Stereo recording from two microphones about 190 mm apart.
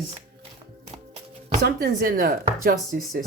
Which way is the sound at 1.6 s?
50° right (ahead or behind).